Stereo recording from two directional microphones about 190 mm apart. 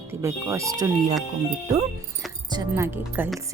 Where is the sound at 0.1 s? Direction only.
15° right (ahead or behind).